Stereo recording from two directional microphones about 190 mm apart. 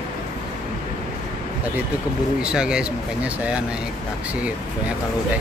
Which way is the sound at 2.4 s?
5° right (ahead or behind).